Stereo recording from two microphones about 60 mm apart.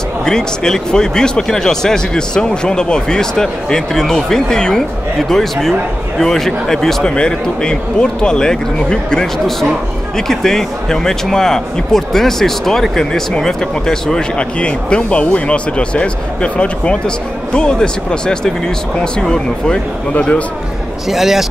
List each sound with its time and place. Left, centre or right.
0.2 s speech: centre
21.1 s speech: centre